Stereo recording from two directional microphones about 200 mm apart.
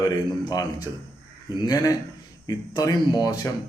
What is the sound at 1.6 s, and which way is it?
Speech, 20° left (ahead or behind).